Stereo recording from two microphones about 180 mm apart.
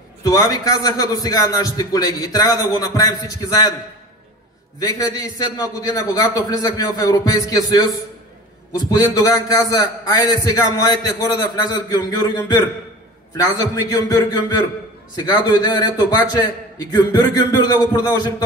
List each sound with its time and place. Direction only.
0.2 s a man's voice: 20° left (ahead or behind)
4.7 s a man's voice: 20° left (ahead or behind)